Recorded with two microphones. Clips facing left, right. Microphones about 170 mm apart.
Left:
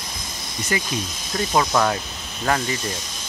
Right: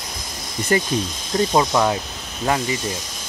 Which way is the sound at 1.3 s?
20° right (ahead or behind).